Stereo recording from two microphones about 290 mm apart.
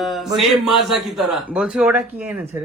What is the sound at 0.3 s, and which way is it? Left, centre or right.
A man's voice, centre.